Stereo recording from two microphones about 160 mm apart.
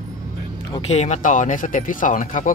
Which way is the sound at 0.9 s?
45° left (ahead or behind).